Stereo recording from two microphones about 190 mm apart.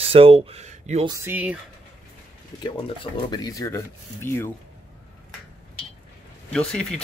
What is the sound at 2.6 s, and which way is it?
Speech, 25° left (ahead or behind).